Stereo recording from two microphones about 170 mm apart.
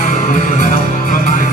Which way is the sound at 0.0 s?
50° left (ahead or behind).